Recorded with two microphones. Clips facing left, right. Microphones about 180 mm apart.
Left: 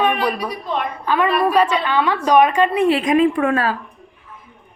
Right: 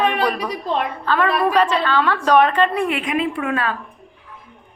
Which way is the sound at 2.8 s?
35° left (ahead or behind).